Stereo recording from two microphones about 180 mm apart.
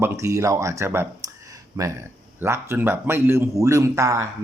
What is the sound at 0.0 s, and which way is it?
A man's voice, 15° right (ahead or behind).